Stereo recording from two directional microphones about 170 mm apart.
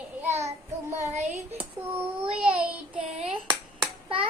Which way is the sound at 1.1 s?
40° right (ahead or behind).